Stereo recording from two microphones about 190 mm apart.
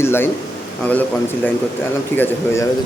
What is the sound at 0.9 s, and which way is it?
A man's voice, 10° left (ahead or behind).